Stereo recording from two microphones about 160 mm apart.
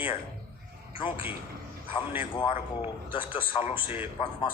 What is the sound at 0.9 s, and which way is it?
A man's voice, 30° left (ahead or behind).